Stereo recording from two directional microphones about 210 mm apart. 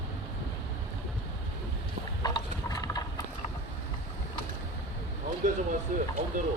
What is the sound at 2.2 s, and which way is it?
Mechanisms, 15° left (ahead or behind).